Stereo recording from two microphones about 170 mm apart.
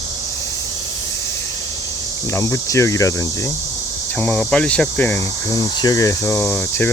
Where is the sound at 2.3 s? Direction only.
15° left (ahead or behind).